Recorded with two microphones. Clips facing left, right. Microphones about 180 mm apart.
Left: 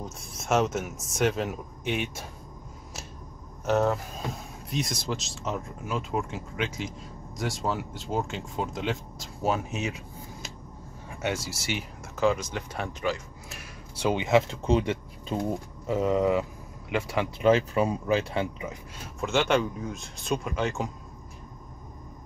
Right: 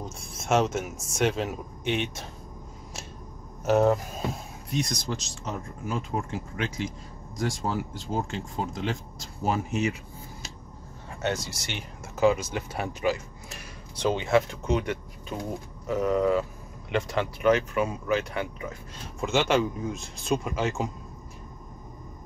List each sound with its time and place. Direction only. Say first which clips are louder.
0.0 s speech: right 1 dB; centre (ahead or behind)
3.6 s speech: right 3 dB; 15° right (ahead or behind)
4.6 s speech: right 1 dB; 5° left (ahead or behind)
11.1 s speech: right 1 dB; 10° left (ahead or behind)
12.2 s speech: right 3 dB; 5° right (ahead or behind)
13.5 s speech: left 1 dB; 10° left (ahead or behind)
14.5 s speech: left 2 dB; 30° left (ahead or behind); by 17.3 s 10° left (ahead or behind)
17.4 s speech: left 1 dB; 30° left (ahead or behind)
19.1 s speech: right 1 dB; centre (ahead or behind)